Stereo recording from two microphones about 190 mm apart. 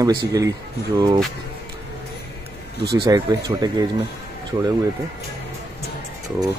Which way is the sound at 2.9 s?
20° right (ahead or behind).